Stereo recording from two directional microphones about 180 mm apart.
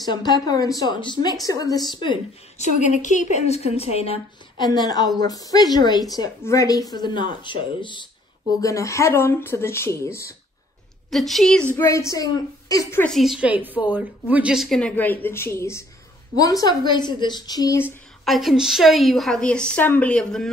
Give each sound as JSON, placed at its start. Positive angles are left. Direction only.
{"t": 0.1, "sound": "a woman's voice", "side_deg": 25}
{"t": 2.6, "sound": "a woman's voice", "side_deg": 40}
{"t": 11.1, "sound": "a woman's voice", "side_deg": 0}
{"t": 11.7, "sound": "a woman's voice", "side_deg": 15}
{"t": 13.1, "sound": "a woman's voice", "side_deg": 0}
{"t": 17.8, "sound": "a woman's voice", "side_deg": 0}